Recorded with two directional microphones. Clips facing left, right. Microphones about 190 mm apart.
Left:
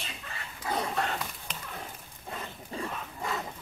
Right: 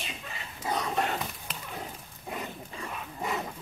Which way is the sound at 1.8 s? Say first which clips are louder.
Right 3 dB; 15° right (ahead or behind).